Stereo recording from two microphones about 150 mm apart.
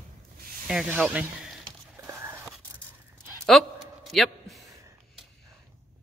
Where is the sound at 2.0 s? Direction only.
15° right (ahead or behind).